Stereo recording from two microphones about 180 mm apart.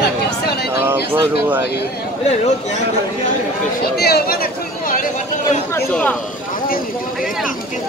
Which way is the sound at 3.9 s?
60° left (ahead or behind).